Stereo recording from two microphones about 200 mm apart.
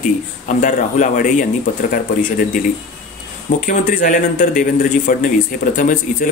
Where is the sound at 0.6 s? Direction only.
40° left (ahead or behind).